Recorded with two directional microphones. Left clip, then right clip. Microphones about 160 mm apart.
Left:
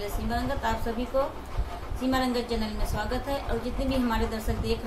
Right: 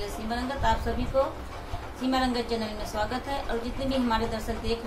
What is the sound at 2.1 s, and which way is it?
A woman's voice, 5° left (ahead or behind).